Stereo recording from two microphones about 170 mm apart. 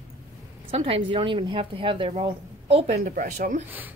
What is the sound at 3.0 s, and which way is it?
Speech, 55° right (ahead or behind).